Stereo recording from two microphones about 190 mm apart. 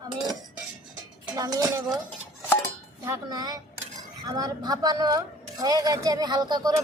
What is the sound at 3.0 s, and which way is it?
A woman's voice, 20° right (ahead or behind).